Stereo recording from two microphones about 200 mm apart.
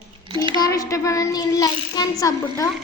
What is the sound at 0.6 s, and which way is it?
A child's voice, 15° left (ahead or behind).